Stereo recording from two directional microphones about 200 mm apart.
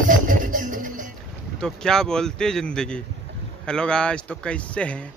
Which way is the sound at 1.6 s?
5° left (ahead or behind).